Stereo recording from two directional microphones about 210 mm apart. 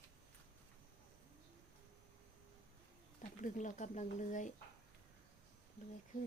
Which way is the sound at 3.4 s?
35° left (ahead or behind).